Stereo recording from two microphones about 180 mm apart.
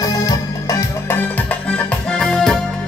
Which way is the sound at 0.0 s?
20° left (ahead or behind).